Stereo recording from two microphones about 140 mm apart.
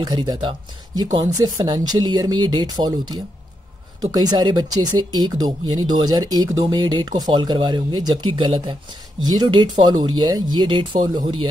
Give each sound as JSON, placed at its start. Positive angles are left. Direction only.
{"t": 0.0, "sound": "speech", "side_deg": -30}